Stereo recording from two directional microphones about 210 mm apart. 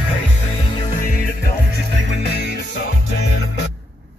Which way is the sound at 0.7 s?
25° left (ahead or behind).